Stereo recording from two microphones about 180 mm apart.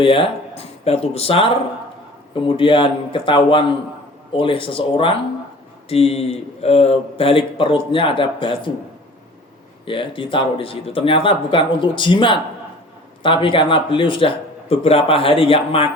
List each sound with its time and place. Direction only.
0.0 s a man's voice: 30° left (ahead or behind)
9.8 s a man's voice: 30° left (ahead or behind)